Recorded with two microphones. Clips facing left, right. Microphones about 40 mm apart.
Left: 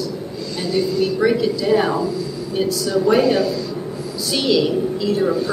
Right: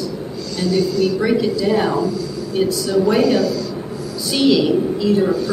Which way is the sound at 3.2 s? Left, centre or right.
Left.